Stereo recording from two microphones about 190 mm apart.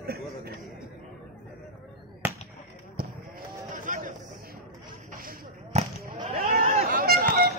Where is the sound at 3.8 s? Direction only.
45° right (ahead or behind).